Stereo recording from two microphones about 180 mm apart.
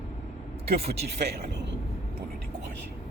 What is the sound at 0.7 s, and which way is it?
Speech, 35° right (ahead or behind).